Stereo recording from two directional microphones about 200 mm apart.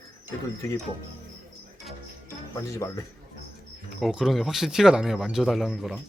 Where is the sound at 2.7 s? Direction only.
15° left (ahead or behind).